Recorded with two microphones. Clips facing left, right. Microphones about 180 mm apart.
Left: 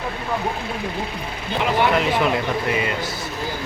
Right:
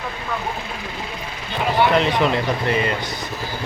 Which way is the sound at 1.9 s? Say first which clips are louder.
Right 1 dB; 5° left (ahead or behind).